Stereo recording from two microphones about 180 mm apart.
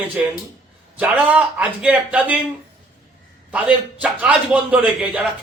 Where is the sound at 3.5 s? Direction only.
5° right (ahead or behind).